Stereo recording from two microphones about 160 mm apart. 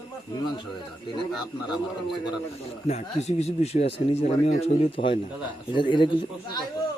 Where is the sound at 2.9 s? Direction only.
40° left (ahead or behind).